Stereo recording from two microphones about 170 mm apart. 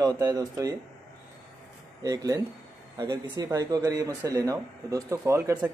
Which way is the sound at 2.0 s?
20° right (ahead or behind).